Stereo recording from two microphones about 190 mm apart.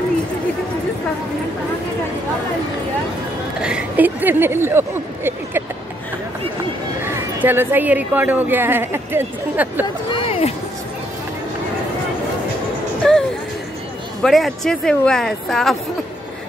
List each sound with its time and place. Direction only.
3.6 s speech: 5° right (ahead or behind)
7.4 s speech: 10° right (ahead or behind)
10.1 s a sound: 30° left (ahead or behind)
13.0 s music: 5° left (ahead or behind)
14.2 s a woman's voice: centre (ahead or behind)